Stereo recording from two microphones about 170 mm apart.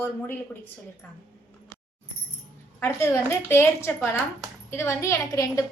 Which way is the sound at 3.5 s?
15° left (ahead or behind).